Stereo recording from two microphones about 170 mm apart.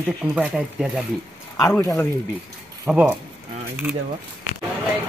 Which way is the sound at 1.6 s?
15° left (ahead or behind).